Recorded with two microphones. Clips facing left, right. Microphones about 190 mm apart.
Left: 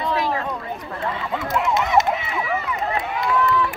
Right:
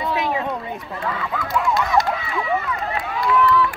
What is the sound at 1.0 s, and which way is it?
Run, 25° left (ahead or behind).